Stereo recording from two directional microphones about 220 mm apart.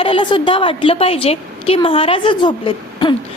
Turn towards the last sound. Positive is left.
turn(degrees=20)  # may be behind; listen again after turning